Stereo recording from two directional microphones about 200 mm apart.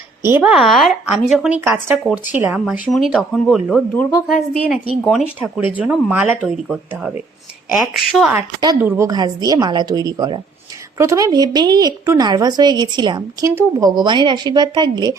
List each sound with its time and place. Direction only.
0.3 s speech: 5° right (ahead or behind)
8.4 s speech: 15° right (ahead or behind)